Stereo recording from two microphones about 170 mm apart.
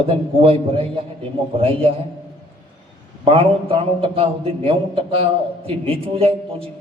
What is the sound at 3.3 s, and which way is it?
A man's voice, 35° right (ahead or behind).